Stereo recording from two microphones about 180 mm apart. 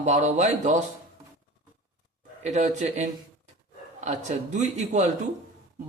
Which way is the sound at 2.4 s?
40° right (ahead or behind).